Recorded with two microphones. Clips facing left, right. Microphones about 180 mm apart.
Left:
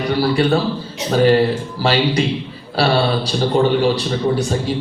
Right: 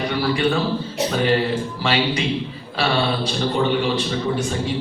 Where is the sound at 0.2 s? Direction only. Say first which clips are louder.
Left 4 dB; 40° left (ahead or behind).